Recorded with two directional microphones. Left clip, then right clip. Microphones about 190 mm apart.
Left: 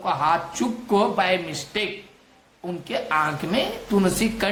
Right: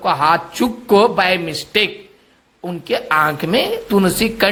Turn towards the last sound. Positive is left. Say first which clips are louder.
# right 7 dB
turn(degrees=-40)  # may be behind; listen again after turning